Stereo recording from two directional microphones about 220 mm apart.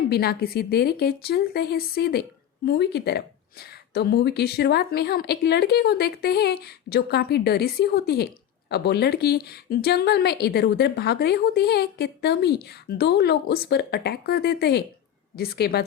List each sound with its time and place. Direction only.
0.1 s speech: 45° left (ahead or behind)